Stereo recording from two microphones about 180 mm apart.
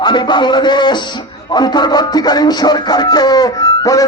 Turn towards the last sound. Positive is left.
turn(degrees=20)  # may be behind; listen again after turning